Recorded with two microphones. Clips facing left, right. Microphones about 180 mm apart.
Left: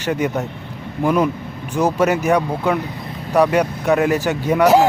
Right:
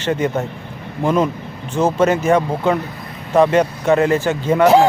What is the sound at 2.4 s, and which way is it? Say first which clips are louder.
Speech: right 2 dB; centre (ahead or behind).